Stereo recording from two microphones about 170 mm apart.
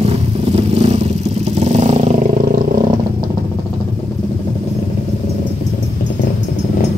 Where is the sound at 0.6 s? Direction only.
35° right (ahead or behind).